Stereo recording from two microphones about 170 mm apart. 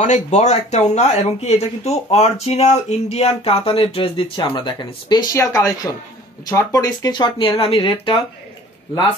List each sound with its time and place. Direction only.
0.0 s speech: 40° left (ahead or behind)